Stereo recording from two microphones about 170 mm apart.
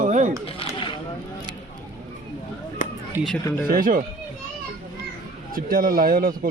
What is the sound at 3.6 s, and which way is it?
Speech, 55° right (ahead or behind).